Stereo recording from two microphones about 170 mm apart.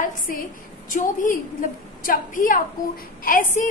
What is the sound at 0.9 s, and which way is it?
A woman's voice, 50° left (ahead or behind).